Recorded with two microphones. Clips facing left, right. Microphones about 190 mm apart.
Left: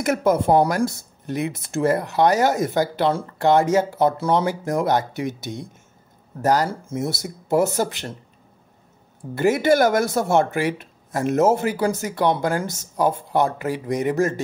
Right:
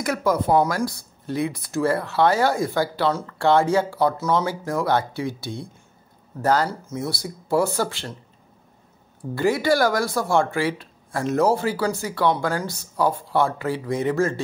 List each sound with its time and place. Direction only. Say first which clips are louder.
0.0 s speech: left 3 dB; 25° left (ahead or behind)
9.3 s speech: left 2 dB; 20° left (ahead or behind)